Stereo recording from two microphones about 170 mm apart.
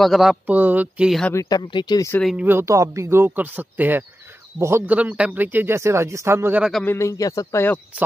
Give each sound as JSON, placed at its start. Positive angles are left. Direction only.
{"t": 0.0, "sound": "speech", "side_deg": 0}
{"t": 1.3, "sound": "speech", "side_deg": 20}
{"t": 2.3, "sound": "speech", "side_deg": -10}
{"t": 6.7, "sound": "speech", "side_deg": 10}